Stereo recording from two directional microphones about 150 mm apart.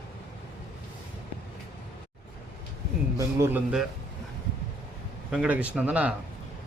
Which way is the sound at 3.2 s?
20° right (ahead or behind).